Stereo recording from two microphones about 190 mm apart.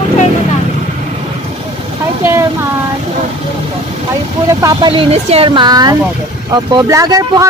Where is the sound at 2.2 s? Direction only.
15° right (ahead or behind).